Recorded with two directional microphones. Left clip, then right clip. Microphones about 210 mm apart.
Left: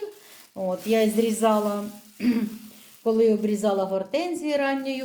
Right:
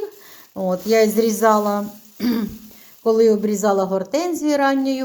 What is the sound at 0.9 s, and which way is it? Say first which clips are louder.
Speech: right 6 dB; 15° right (ahead or behind).